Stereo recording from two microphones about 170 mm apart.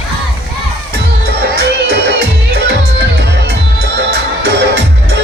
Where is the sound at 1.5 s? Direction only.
70° right (ahead or behind).